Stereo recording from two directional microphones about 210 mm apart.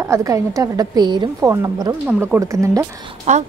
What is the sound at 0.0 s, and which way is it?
A woman's voice, 15° right (ahead or behind).